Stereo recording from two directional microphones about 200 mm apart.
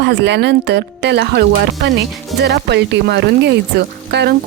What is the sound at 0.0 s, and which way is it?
Speech, 60° right (ahead or behind).